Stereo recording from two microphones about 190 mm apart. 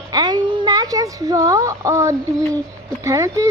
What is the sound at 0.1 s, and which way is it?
Speech, 20° right (ahead or behind).